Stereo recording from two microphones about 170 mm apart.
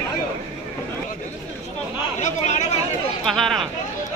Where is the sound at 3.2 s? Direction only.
Centre (ahead or behind).